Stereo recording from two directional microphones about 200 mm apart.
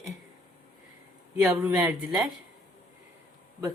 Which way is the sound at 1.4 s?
10° right (ahead or behind).